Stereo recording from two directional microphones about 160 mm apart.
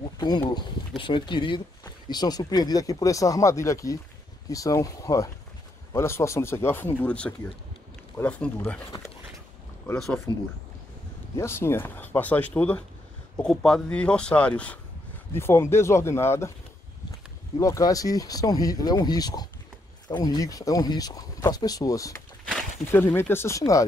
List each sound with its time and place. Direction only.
0.5 s speech: 30° left (ahead or behind); by 8.8 s 10° left (ahead or behind)
9.9 s speech: 5° left (ahead or behind)
11.3 s speech: 15° left (ahead or behind)
17.6 s speech: 20° left (ahead or behind)